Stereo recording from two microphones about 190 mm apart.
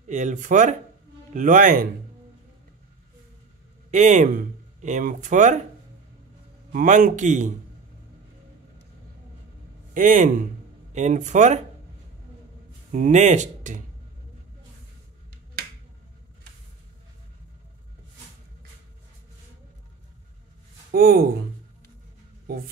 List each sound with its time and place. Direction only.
0.1 s speech: 40° right (ahead or behind)
3.9 s speech: 40° right (ahead or behind)
6.7 s speech: 45° right (ahead or behind)
9.9 s speech: 40° right (ahead or behind)
12.9 s speech: 40° right (ahead or behind)
20.9 s speech: 55° right (ahead or behind)